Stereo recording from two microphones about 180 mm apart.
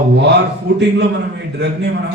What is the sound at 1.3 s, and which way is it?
Speech, 70° right (ahead or behind).